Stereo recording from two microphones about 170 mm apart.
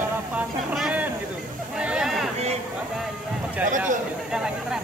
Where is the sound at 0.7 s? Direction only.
5° right (ahead or behind).